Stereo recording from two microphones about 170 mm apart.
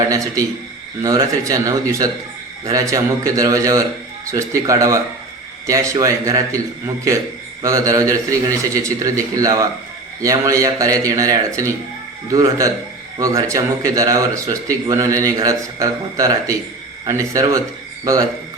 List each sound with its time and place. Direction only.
1.0 s a man's voice: 20° right (ahead or behind)